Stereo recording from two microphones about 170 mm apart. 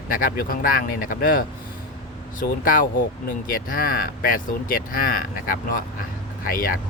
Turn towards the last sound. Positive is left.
turn(degrees=60)  # may be behind; listen again after turning